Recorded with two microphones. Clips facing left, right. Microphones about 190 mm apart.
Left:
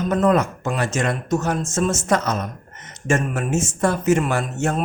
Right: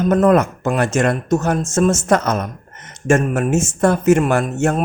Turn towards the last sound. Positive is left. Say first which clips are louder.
# right 5 dB
turn(degrees=-50)  # may be behind; listen again after turning